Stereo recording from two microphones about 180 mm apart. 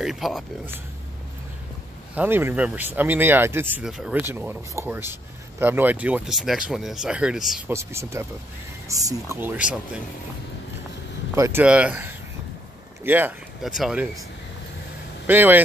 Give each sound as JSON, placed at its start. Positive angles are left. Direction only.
{"t": 0.0, "sound": "speech", "side_deg": 0}
{"t": 2.1, "sound": "speech", "side_deg": -10}
{"t": 7.7, "sound": "speech", "side_deg": -15}
{"t": 11.3, "sound": "speech", "side_deg": -15}
{"t": 15.2, "sound": "speech", "side_deg": -10}